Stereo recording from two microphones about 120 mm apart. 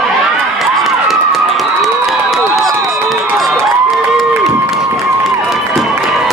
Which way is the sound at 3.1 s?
Centre (ahead or behind).